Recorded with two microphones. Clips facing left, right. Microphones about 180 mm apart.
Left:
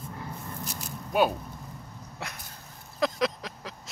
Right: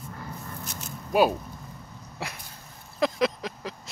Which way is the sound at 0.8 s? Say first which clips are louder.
Right 3 dB; centre (ahead or behind).